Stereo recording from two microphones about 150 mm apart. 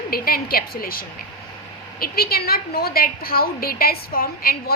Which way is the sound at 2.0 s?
90° left.